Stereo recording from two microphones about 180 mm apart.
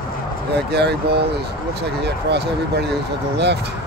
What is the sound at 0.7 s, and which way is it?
Speech, 65° right (ahead or behind).